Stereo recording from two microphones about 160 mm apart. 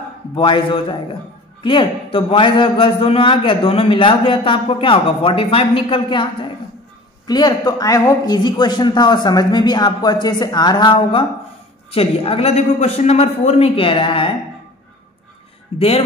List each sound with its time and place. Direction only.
0.4 s a man's voice: 30° left (ahead or behind)
15.7 s speech: 15° right (ahead or behind)